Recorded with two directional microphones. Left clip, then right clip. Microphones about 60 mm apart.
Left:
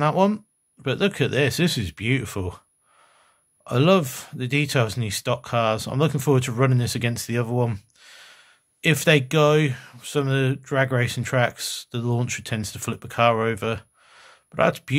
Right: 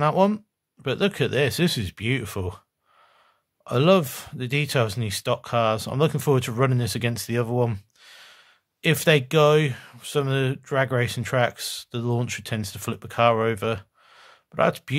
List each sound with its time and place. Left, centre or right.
0.0 s speech: right
3.6 s speech: right